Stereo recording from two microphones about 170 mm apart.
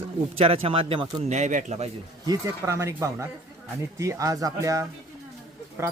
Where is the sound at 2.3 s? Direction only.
20° right (ahead or behind).